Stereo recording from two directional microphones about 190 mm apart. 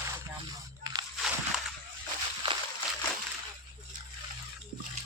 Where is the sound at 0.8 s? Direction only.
20° right (ahead or behind).